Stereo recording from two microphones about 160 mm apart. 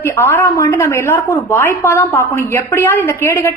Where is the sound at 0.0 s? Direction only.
15° left (ahead or behind).